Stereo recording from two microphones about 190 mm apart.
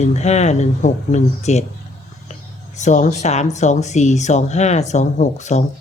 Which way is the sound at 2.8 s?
40° left (ahead or behind).